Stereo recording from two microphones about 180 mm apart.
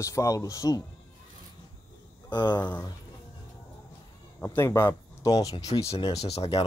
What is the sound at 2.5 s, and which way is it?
Speech, 10° left (ahead or behind).